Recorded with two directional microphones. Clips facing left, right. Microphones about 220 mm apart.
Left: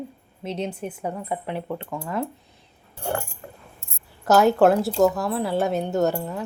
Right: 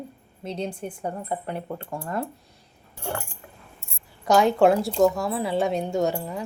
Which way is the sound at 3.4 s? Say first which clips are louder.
Left 7 dB; 40° left (ahead or behind).